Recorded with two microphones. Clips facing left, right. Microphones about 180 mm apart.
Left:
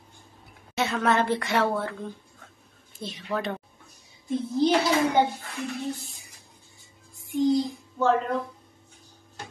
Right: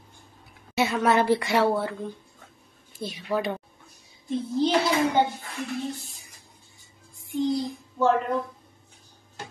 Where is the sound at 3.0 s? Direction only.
10° right (ahead or behind).